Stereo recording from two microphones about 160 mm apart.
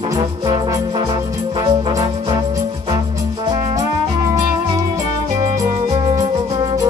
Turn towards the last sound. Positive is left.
turn(degrees=-25)  # may be behind; listen again after turning